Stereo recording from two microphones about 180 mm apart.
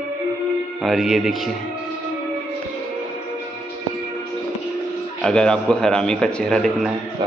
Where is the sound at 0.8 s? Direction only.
Centre (ahead or behind).